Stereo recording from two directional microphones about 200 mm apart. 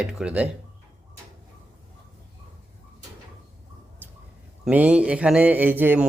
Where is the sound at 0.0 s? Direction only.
5° right (ahead or behind).